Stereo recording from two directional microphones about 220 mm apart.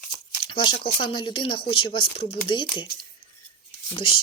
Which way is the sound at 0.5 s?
25° left (ahead or behind).